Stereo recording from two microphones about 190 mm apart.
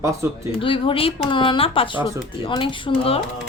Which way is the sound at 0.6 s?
30° left (ahead or behind).